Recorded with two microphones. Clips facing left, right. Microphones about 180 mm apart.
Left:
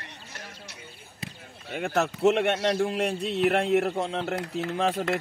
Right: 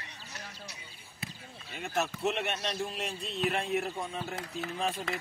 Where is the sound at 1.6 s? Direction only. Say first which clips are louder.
Left 7 dB; 60° left (ahead or behind).